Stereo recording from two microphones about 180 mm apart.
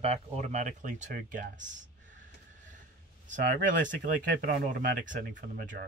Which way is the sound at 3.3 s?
45° right (ahead or behind).